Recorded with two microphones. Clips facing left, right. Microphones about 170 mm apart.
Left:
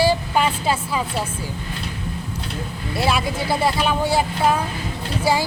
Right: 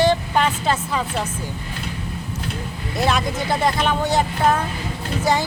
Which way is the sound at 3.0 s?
5° left (ahead or behind).